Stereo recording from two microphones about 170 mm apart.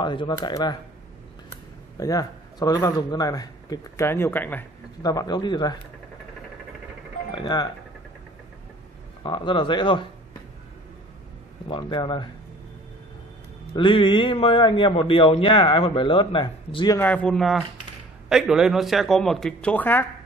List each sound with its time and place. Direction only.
0.0 s speech: 30° left (ahead or behind)
2.0 s speech: 20° left (ahead or behind)
5.0 s speech: 20° left (ahead or behind)
7.3 s speech: 25° left (ahead or behind)
9.2 s speech: 30° left (ahead or behind)
11.7 s speech: 30° left (ahead or behind)
13.7 s a man's voice: 30° left (ahead or behind)
16.9 s a man's voice: 10° left (ahead or behind)